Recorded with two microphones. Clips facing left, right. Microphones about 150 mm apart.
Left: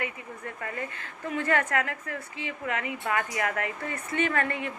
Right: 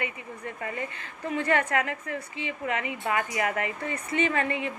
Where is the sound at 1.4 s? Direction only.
15° right (ahead or behind).